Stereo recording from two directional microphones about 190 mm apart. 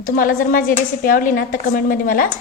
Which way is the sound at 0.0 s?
45° left (ahead or behind).